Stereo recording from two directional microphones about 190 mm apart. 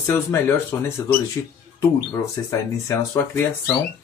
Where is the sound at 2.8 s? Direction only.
15° left (ahead or behind).